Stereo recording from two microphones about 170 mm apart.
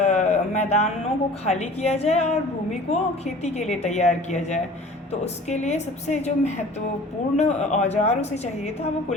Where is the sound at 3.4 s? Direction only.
40° left (ahead or behind).